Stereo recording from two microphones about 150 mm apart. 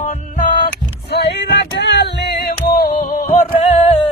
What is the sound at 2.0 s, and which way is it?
Music, 90° left.